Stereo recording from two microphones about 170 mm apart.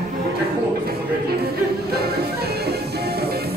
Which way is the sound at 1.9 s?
70° right (ahead or behind).